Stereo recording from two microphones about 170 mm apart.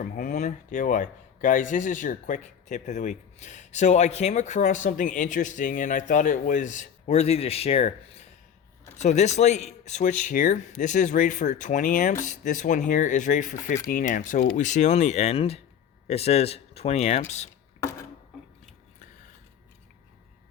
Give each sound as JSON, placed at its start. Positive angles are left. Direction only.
{"t": 0.0, "sound": "speech", "side_deg": 50}